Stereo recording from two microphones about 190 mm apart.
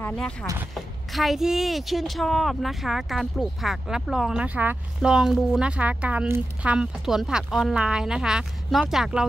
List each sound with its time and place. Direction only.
0.1 s speech: 5° left (ahead or behind)